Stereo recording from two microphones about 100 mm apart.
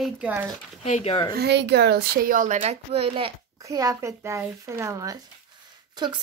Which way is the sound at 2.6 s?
90° right.